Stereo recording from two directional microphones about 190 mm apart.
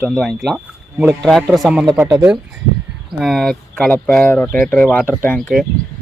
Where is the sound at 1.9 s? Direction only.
15° right (ahead or behind).